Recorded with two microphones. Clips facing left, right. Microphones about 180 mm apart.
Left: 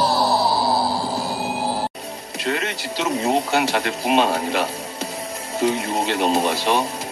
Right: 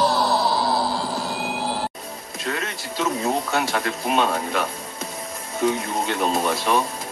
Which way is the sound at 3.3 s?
30° left (ahead or behind).